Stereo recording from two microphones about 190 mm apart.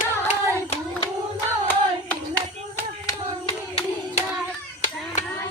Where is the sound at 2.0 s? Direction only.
10° left (ahead or behind).